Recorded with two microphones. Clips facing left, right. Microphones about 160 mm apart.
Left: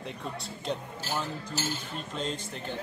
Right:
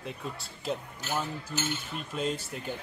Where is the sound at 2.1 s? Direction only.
10° right (ahead or behind).